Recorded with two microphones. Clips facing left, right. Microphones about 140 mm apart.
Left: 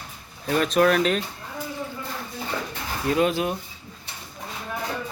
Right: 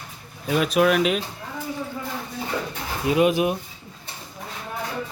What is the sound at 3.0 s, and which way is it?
Speech, 15° right (ahead or behind).